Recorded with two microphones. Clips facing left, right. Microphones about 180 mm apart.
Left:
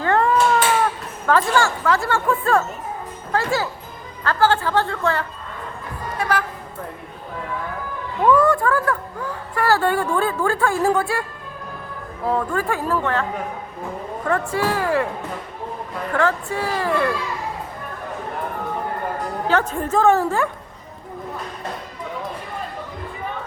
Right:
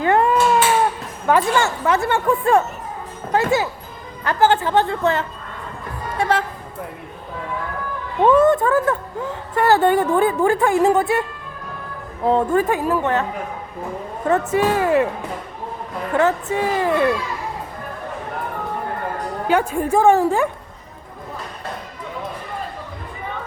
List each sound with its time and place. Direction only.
0.0 s cat: 15° right (ahead or behind)
1.3 s speech: 20° right (ahead or behind)
8.2 s speech: 25° right (ahead or behind)
14.3 s speech: 20° right (ahead or behind)
16.1 s speech: 20° right (ahead or behind)
19.5 s a woman's voice: 10° right (ahead or behind)